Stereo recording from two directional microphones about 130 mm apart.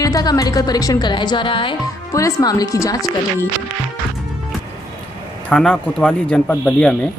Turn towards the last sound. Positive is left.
turn(degrees=10)  # may be behind; listen again after turning